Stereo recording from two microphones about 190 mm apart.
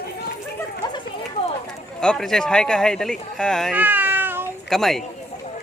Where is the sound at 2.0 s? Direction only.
5° left (ahead or behind).